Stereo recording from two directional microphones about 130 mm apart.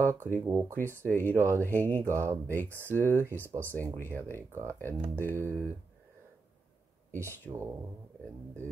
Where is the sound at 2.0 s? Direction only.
20° right (ahead or behind).